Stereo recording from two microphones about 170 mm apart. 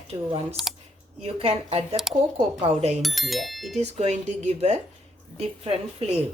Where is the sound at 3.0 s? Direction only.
Centre (ahead or behind).